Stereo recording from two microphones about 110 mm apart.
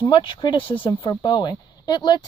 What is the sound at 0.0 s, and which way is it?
Speech, 50° left (ahead or behind).